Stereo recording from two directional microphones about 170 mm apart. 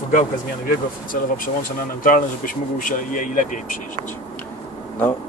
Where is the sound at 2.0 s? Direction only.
55° left (ahead or behind).